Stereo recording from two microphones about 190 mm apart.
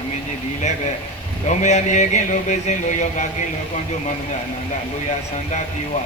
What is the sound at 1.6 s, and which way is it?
Speech, 40° left (ahead or behind).